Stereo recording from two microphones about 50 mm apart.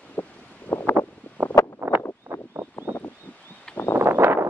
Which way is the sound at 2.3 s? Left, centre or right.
Right.